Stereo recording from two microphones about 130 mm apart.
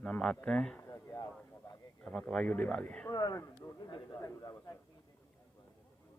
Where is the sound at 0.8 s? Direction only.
20° left (ahead or behind).